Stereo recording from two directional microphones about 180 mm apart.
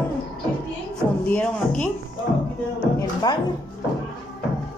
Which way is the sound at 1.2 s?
10° left (ahead or behind).